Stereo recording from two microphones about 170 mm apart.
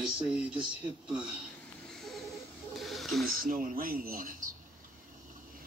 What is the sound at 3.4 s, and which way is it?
Speech, 55° right (ahead or behind).